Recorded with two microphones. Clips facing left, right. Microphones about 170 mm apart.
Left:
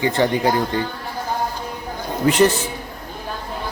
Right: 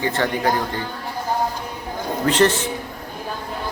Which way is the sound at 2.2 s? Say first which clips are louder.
Left 2 dB; 10° left (ahead or behind).